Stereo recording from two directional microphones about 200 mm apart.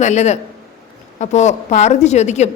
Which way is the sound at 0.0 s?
35° left (ahead or behind).